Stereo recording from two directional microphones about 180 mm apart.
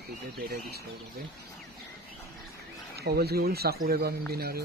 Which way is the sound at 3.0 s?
60° right (ahead or behind).